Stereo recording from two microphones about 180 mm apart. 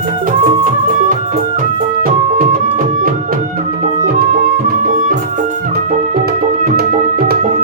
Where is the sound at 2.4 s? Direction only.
50° right (ahead or behind).